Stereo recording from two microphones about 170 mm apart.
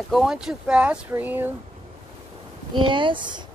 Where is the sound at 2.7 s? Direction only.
30° right (ahead or behind).